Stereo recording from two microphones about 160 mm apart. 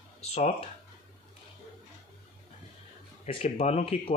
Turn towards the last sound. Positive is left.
turn(degrees=40)  # may be behind; listen again after turning